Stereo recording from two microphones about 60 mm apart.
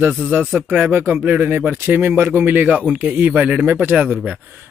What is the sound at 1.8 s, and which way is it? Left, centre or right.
Speech, right.